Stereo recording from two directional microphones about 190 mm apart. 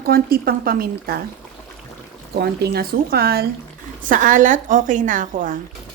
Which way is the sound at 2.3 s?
55° right (ahead or behind).